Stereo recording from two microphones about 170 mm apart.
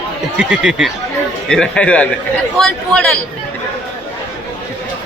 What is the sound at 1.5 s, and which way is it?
Speech, 5° left (ahead or behind).